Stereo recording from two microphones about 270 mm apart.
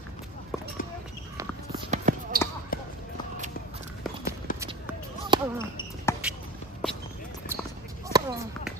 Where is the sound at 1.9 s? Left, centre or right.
Right.